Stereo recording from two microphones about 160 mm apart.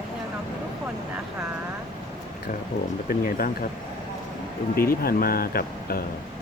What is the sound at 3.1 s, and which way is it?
Speech, 60° left (ahead or behind).